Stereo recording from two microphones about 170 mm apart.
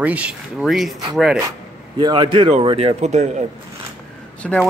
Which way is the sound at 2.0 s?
25° right (ahead or behind).